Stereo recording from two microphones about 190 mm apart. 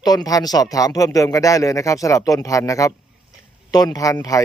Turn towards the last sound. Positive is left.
turn(degrees=15)  # may be behind; listen again after turning